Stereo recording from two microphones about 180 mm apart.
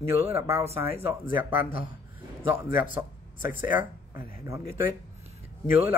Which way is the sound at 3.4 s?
10° right (ahead or behind).